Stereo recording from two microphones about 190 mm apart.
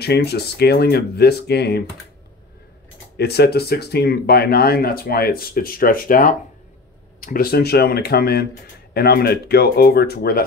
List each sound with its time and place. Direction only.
0.0 s speech: 60° left (ahead or behind)
3.2 s speech: 60° left (ahead or behind)